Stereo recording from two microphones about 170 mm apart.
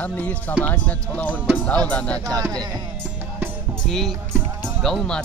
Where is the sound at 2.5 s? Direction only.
25° right (ahead or behind).